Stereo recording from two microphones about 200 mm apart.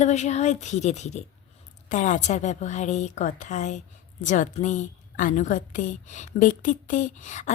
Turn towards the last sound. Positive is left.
turn(degrees=40)  # may be behind; listen again after turning